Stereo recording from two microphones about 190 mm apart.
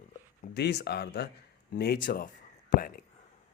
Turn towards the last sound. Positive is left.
turn(degrees=45)  # may be behind; listen again after turning